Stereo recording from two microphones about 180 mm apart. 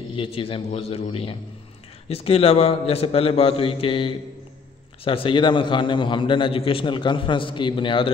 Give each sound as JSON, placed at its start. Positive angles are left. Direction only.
{"t": 0.1, "sound": "a man's voice", "side_deg": 30}